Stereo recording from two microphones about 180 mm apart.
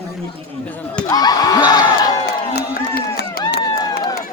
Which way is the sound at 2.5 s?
60° left (ahead or behind).